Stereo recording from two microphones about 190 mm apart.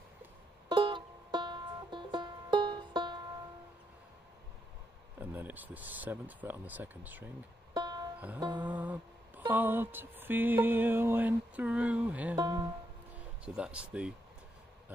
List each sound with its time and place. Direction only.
0.7 s music: 25° right (ahead or behind)
5.2 s mantra: 10° right (ahead or behind)
7.7 s music: 20° right (ahead or behind)
8.5 s mantra: 10° right (ahead or behind)
12.4 s speech: 20° right (ahead or behind)
13.6 s speech: 5° right (ahead or behind)